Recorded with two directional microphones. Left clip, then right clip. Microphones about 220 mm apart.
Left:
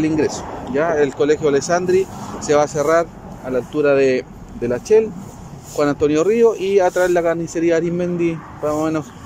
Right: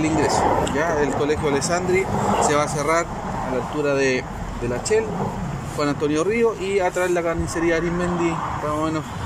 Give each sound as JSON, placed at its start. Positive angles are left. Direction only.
{"t": 0.0, "sound": "speech", "side_deg": 50}